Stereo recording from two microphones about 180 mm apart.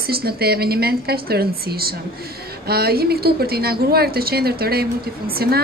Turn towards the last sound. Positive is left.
turn(degrees=-60)  # may be behind; listen again after turning